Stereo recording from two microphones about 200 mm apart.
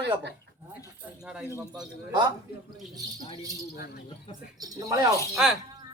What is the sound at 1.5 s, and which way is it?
Speech, 20° right (ahead or behind).